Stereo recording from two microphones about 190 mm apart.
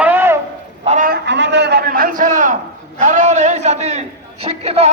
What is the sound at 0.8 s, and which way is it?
Speech, 40° right (ahead or behind).